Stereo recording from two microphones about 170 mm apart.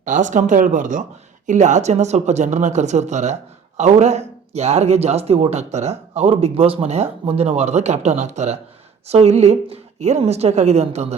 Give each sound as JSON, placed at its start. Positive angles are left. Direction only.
{"t": 0.0, "sound": "speech", "side_deg": -45}